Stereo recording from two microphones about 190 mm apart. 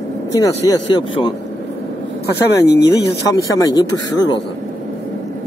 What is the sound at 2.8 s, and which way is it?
Speech, 20° left (ahead or behind).